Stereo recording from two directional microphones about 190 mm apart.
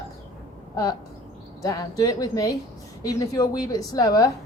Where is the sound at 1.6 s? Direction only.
15° left (ahead or behind).